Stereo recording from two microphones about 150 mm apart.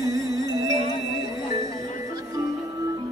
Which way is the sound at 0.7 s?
30° left (ahead or behind).